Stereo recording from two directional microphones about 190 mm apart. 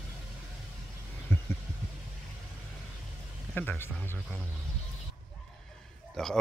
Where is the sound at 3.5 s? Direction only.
10° left (ahead or behind).